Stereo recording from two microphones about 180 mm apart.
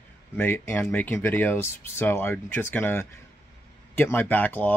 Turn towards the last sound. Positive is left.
turn(degrees=10)  # may be behind; listen again after turning